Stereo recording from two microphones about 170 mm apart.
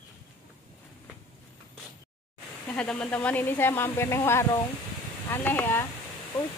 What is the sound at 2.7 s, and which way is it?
Speech, 5° left (ahead or behind).